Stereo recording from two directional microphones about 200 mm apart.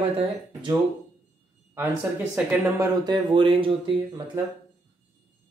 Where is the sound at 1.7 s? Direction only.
10° right (ahead or behind).